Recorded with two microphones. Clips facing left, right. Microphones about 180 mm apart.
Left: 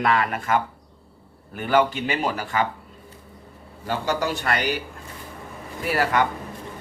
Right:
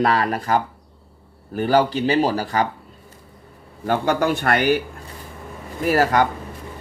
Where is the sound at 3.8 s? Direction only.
55° right (ahead or behind).